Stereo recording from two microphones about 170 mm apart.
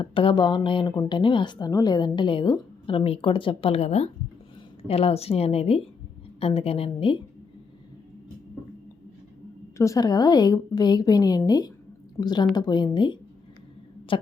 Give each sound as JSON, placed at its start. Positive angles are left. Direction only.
{"t": 0.0, "sound": "a woman's voice", "side_deg": 30}
{"t": 9.7, "sound": "a woman's voice", "side_deg": 20}